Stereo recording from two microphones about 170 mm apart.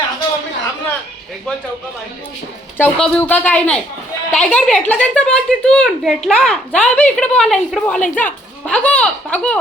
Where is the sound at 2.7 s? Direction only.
10° left (ahead or behind).